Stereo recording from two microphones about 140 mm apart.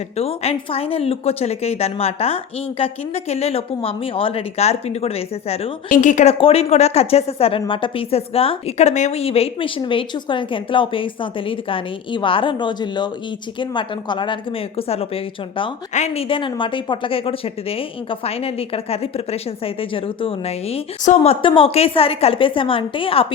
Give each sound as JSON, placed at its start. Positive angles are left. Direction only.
{"t": 0.2, "sound": "a woman's voice", "side_deg": 45}
{"t": 5.9, "sound": "a woman's voice", "side_deg": 60}
{"t": 6.4, "sound": "a woman's voice", "side_deg": 45}
{"t": 15.9, "sound": "a woman's voice", "side_deg": 55}
{"t": 21.4, "sound": "a woman's voice", "side_deg": 40}